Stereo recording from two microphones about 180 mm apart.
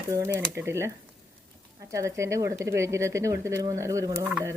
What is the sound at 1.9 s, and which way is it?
Speech, 15° right (ahead or behind).